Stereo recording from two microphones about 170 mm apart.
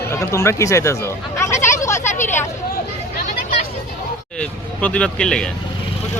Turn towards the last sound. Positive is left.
turn(degrees=5)  # may be behind; listen again after turning